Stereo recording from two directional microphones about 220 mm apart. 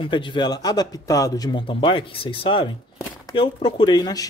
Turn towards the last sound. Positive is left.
turn(degrees=15)  # may be behind; listen again after turning